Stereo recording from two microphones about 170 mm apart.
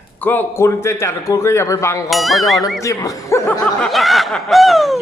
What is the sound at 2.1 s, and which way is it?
Speech, centre (ahead or behind).